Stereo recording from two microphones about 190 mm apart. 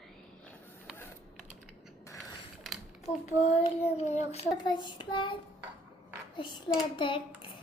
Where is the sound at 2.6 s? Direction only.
Centre (ahead or behind).